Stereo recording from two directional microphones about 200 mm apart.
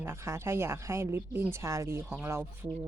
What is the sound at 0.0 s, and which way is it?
Speech, 10° right (ahead or behind).